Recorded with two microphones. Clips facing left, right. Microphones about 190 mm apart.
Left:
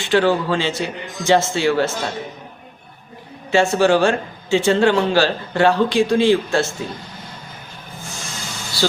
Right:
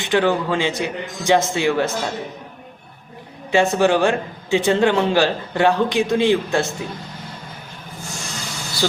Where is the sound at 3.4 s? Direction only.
20° right (ahead or behind).